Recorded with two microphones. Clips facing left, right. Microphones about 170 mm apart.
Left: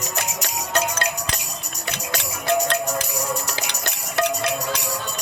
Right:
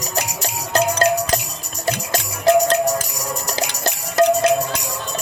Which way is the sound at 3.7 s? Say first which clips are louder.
Right 5 dB; 40° right (ahead or behind).